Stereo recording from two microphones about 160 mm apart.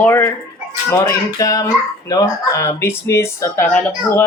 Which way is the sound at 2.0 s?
20° left (ahead or behind).